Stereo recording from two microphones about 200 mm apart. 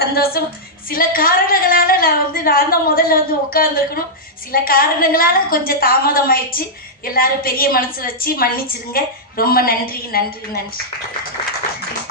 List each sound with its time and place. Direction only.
0.0 s a woman's voice: 50° left (ahead or behind)